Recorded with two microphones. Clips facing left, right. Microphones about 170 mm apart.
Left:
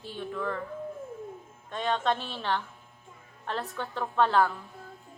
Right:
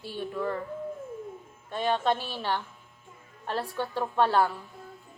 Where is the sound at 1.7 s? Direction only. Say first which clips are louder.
Right 2 dB; 10° right (ahead or behind).